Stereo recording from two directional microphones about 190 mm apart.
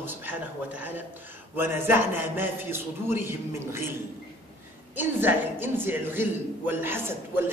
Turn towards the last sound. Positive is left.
turn(degrees=-10)  # may be behind; listen again after turning